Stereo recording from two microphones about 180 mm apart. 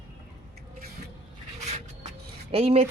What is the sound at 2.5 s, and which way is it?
Speech, 35° right (ahead or behind).